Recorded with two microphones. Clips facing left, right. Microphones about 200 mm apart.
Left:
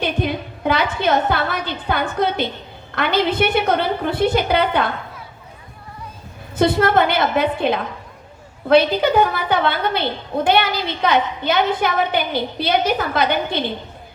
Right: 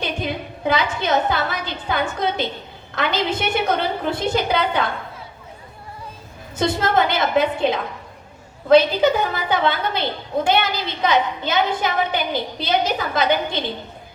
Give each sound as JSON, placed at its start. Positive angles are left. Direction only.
{"t": 0.0, "sound": "a woman's voice", "side_deg": 55}
{"t": 6.6, "sound": "a woman's voice", "side_deg": 60}